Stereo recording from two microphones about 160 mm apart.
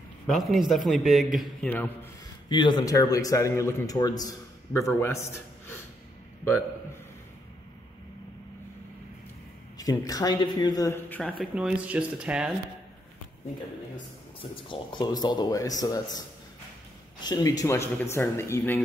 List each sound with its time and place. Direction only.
0.3 s a man's voice: centre (ahead or behind)
2.5 s a man's voice: 25° left (ahead or behind)
9.8 s a man's voice: 20° left (ahead or behind)
10.9 s speech: 10° left (ahead or behind)
11.5 s speech: 5° right (ahead or behind)
14.5 s a man's voice: 30° left (ahead or behind); by 18.8 s 15° left (ahead or behind)